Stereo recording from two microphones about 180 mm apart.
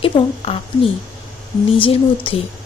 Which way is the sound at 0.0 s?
30° left (ahead or behind).